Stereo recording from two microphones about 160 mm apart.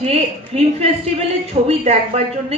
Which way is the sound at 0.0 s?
40° right (ahead or behind).